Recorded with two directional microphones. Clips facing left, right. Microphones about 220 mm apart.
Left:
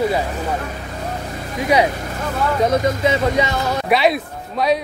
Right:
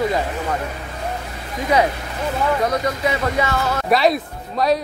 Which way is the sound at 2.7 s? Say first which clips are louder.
Left 4 dB; 20° left (ahead or behind).